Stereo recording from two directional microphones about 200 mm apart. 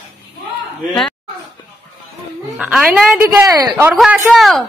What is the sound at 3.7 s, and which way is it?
Speech, 5° right (ahead or behind).